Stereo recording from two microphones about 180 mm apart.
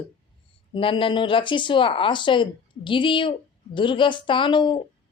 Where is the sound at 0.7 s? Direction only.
30° left (ahead or behind).